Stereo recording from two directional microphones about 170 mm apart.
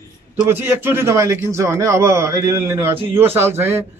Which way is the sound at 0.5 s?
15° right (ahead or behind).